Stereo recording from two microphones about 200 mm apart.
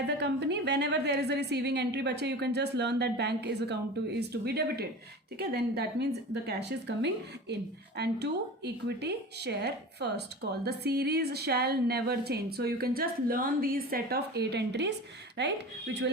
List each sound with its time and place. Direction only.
0.1 s a woman's voice: 55° right (ahead or behind)